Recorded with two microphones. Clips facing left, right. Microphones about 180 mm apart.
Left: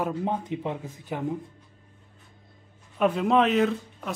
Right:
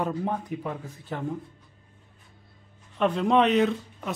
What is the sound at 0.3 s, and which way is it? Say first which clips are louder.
Speech: left 2 dB; 20° left (ahead or behind).